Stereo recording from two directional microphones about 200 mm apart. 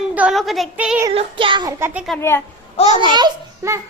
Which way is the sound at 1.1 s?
25° right (ahead or behind).